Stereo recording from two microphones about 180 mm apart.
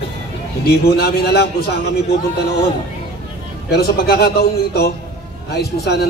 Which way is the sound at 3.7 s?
60° left (ahead or behind).